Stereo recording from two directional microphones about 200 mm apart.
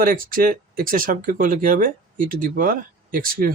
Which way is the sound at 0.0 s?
45° right (ahead or behind).